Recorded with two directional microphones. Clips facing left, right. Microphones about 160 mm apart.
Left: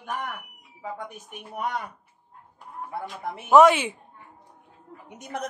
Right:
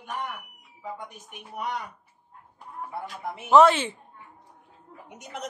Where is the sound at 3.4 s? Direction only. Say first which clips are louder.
Left 1 dB; 10° left (ahead or behind).